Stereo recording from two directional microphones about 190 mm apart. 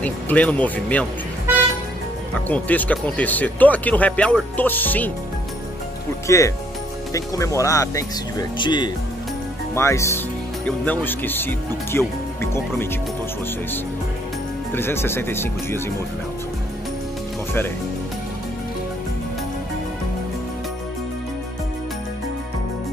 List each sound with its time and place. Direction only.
0.0 s speech: 5° left (ahead or behind)
2.4 s speech: 10° left (ahead or behind)
6.2 s speech: 15° left (ahead or behind)
14.7 s speech: 10° left (ahead or behind)